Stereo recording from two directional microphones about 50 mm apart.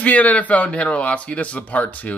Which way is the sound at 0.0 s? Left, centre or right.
Left.